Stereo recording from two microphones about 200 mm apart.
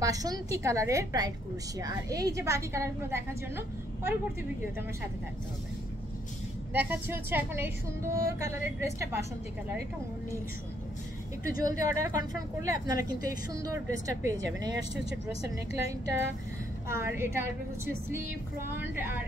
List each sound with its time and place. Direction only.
0.0 s a woman's voice: 20° right (ahead or behind)
6.7 s a woman's voice: 10° right (ahead or behind)
11.4 s a woman's voice: 15° right (ahead or behind)
16.9 s a woman's voice: 10° right (ahead or behind)